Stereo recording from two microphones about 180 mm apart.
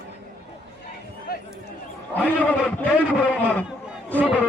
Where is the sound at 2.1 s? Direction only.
10° left (ahead or behind).